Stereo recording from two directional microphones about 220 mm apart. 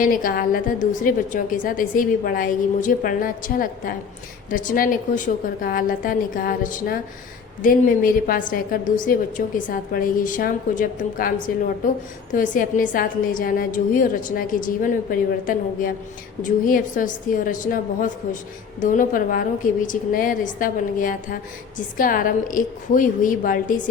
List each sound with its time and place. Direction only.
0.0 s a woman's voice: 40° left (ahead or behind)
8.3 s a woman's voice: 40° left (ahead or behind)